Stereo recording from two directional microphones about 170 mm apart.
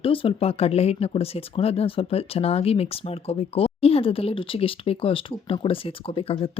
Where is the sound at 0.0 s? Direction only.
30° left (ahead or behind).